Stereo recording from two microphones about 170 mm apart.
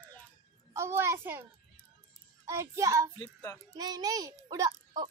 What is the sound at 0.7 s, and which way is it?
Speech, 15° right (ahead or behind).